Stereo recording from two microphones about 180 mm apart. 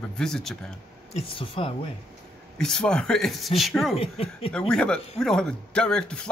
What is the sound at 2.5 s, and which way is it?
Speech, 5° left (ahead or behind).